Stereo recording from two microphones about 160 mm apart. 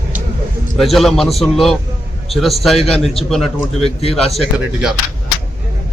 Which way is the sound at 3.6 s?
35° left (ahead or behind).